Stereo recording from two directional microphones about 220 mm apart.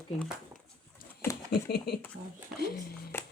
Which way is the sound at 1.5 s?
45° left (ahead or behind).